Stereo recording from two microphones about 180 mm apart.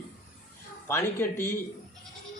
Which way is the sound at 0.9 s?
15° left (ahead or behind).